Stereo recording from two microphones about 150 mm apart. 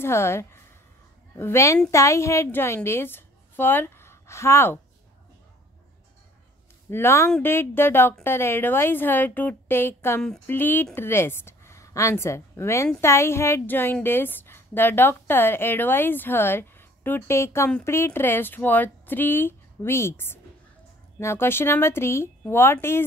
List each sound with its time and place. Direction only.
0.0 s a woman's voice: 15° left (ahead or behind)
6.9 s a woman's voice: 15° left (ahead or behind)
10.2 s a woman's voice: 5° left (ahead or behind)